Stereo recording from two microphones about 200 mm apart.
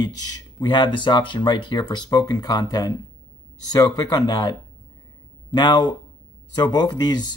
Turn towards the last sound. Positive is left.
turn(degrees=20)  # may be behind; listen again after turning